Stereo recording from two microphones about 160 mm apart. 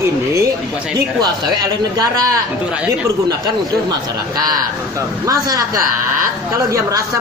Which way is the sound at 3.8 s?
25° right (ahead or behind).